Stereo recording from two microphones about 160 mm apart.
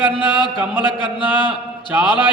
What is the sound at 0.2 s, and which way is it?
Speech, 30° left (ahead or behind).